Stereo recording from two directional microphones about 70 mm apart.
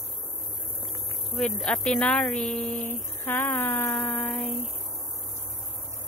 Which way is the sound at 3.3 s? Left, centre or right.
Left.